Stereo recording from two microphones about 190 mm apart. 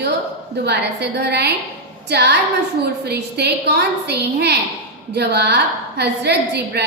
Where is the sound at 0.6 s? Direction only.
60° right (ahead or behind).